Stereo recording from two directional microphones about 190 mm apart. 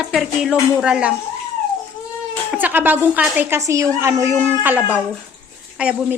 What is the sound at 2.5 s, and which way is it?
Speech, 10° right (ahead or behind).